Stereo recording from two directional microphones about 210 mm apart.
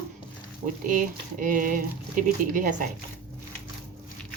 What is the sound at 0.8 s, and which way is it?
Speech, 40° right (ahead or behind).